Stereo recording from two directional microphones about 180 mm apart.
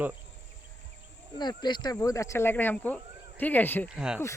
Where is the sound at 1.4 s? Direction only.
25° left (ahead or behind).